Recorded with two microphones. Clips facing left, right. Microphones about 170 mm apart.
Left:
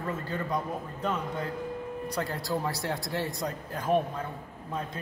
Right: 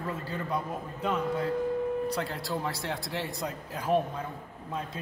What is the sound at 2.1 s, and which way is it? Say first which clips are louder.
Speech: left 1 dB; centre (ahead or behind).